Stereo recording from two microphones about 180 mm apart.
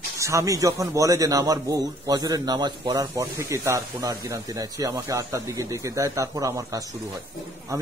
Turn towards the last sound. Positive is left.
turn(degrees=-15)  # may be behind; listen again after turning